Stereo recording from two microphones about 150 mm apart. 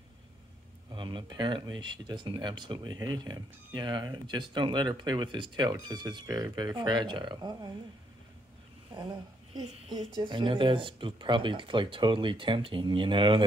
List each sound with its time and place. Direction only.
0.9 s speech: 30° right (ahead or behind)
9.9 s speech: 30° right (ahead or behind)